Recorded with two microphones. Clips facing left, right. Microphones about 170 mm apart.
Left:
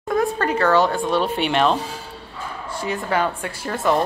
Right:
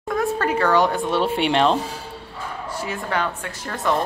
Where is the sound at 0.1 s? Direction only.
5° right (ahead or behind); by 1.8 s 30° right (ahead or behind).